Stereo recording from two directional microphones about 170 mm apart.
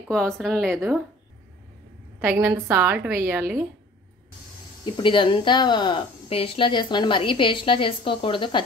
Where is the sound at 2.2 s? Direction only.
10° right (ahead or behind).